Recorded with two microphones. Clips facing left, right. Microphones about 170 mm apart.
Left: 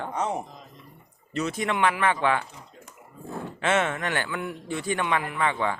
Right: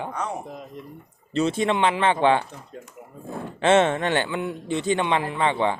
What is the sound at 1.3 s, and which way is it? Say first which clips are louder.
Speech: right 5 dB; 30° right (ahead or behind).